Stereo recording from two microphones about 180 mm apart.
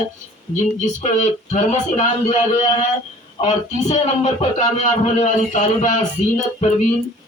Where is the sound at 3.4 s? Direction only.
40° left (ahead or behind).